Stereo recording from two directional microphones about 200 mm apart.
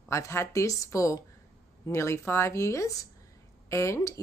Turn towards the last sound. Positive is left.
turn(degrees=15)  # may be behind; listen again after turning